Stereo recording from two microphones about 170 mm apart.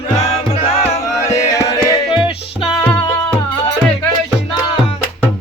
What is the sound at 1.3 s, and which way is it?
Music, 20° left (ahead or behind).